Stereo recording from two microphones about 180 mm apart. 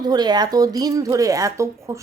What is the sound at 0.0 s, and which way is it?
Speech, 25° right (ahead or behind).